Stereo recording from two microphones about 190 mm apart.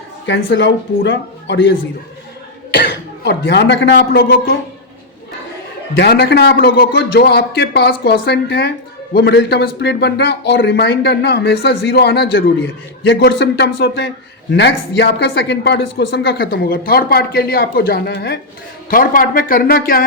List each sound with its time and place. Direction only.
0.3 s speech: 70° left (ahead or behind)
2.7 s speech: 55° left (ahead or behind)
5.9 s speech: 60° left (ahead or behind)
18.9 s speech: 45° left (ahead or behind)